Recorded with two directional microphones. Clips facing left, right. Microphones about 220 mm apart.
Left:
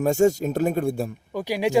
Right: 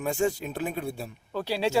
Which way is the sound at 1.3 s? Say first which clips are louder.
Left 3 dB; 15° left (ahead or behind).